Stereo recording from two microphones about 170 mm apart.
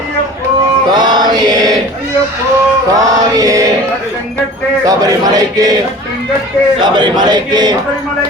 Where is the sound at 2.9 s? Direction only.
20° right (ahead or behind).